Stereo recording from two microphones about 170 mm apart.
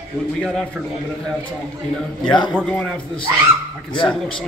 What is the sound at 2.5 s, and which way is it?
Speech, centre (ahead or behind).